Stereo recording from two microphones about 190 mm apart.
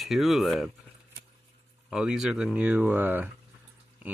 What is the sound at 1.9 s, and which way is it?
Speech, 5° right (ahead or behind).